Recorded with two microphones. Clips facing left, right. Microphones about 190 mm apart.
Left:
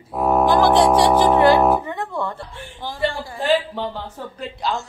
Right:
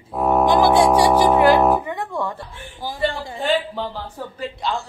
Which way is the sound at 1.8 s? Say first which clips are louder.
Even; 10° right (ahead or behind).